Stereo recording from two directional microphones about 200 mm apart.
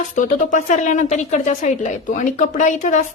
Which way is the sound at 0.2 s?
40° left (ahead or behind).